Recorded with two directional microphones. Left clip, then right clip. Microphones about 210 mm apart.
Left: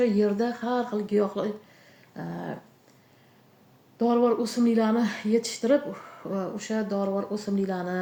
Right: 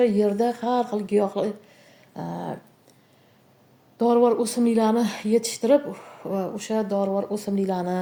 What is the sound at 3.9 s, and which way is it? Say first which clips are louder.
Speech: right 4 dB; 35° right (ahead or behind).